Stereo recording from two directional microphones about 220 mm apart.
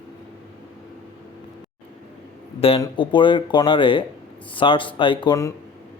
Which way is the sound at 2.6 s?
25° left (ahead or behind).